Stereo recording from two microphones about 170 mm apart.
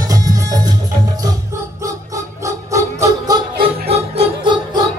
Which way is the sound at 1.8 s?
20° right (ahead or behind).